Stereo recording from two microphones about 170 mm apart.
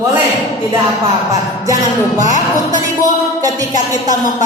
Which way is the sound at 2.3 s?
50° left (ahead or behind).